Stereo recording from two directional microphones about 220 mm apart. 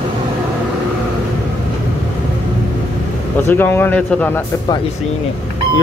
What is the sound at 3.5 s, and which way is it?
Speech, 10° left (ahead or behind).